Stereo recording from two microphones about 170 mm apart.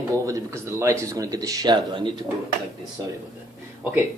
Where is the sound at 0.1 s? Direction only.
20° right (ahead or behind).